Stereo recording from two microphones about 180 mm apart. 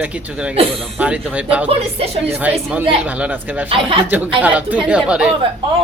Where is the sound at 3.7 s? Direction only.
30° right (ahead or behind).